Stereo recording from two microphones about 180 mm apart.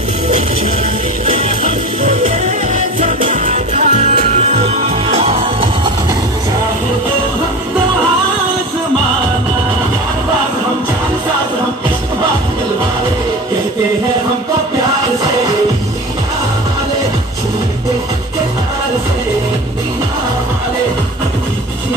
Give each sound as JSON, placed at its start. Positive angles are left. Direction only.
{"t": 1.2, "sound": "music", "side_deg": -35}